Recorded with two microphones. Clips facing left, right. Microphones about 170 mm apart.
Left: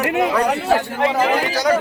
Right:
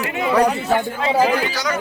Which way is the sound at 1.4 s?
50° left (ahead or behind).